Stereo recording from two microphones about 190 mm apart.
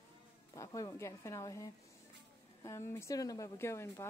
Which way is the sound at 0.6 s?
15° left (ahead or behind).